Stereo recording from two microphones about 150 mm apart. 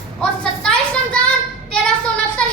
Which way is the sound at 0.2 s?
5° left (ahead or behind).